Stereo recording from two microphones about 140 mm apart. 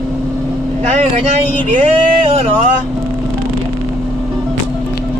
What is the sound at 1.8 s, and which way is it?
Speech, 45° right (ahead or behind).